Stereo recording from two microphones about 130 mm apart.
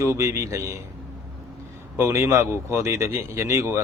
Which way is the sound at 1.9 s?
20° right (ahead or behind).